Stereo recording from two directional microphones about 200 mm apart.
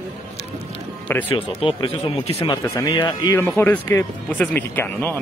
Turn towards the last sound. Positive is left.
turn(degrees=10)  # may be behind; listen again after turning